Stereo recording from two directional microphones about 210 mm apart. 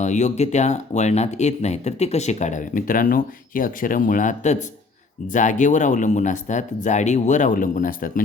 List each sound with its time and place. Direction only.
0.0 s speech: 35° left (ahead or behind)